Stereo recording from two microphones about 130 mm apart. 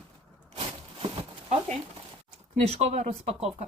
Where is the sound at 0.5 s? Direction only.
45° right (ahead or behind).